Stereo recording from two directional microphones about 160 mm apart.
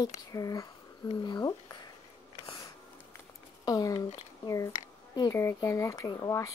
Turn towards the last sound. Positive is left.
turn(degrees=20)  # may be behind; listen again after turning